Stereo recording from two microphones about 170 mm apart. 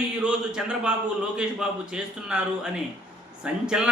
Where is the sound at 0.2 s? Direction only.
5° right (ahead or behind).